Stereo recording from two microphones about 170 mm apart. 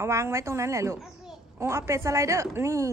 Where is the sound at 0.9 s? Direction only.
Centre (ahead or behind).